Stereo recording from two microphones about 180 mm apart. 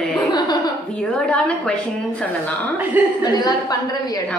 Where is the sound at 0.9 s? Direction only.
5° left (ahead or behind).